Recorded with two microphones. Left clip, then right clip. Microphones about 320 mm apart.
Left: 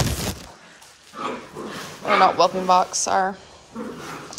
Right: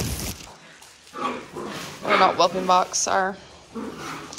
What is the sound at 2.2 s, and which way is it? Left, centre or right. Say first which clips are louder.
A woman's voice: left 2 dB; centre.